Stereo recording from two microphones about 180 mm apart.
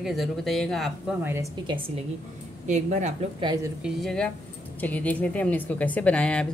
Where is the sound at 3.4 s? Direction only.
20° right (ahead or behind).